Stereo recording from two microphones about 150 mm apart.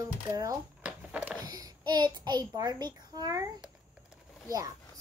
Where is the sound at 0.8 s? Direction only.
10° right (ahead or behind).